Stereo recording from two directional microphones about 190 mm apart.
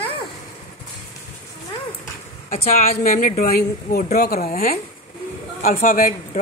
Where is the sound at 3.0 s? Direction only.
45° left (ahead or behind).